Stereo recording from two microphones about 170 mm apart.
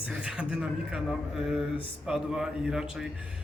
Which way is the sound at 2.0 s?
5° right (ahead or behind).